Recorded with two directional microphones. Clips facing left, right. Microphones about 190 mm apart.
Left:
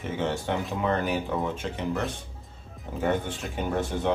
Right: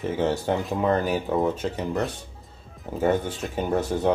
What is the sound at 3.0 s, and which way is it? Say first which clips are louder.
Speech: right 4 dB; 40° right (ahead or behind).